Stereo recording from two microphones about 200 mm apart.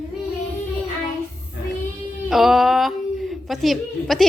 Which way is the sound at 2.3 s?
Centre (ahead or behind).